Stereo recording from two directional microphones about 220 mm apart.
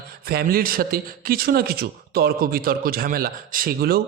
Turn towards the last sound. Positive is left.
turn(degrees=-45)  # may be behind; listen again after turning